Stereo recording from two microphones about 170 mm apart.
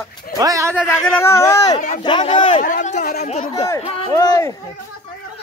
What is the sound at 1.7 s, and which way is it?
Speech, 45° left (ahead or behind).